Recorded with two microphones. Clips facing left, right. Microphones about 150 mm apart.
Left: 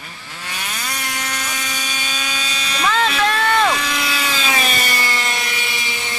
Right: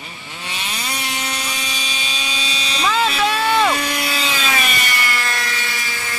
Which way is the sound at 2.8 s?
5° right (ahead or behind).